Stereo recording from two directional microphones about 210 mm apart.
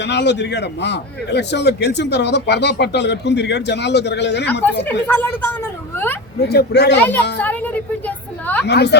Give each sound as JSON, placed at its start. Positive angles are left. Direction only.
{"t": 0.0, "sound": "a man's voice", "side_deg": 55}
{"t": 5.0, "sound": "speech", "side_deg": 10}
{"t": 6.4, "sound": "a man's voice", "side_deg": 50}
{"t": 7.3, "sound": "a woman's voice", "side_deg": 10}
{"t": 8.6, "sound": "a man's voice", "side_deg": 50}